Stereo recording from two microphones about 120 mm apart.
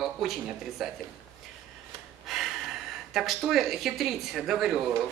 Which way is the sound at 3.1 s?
Centre (ahead or behind).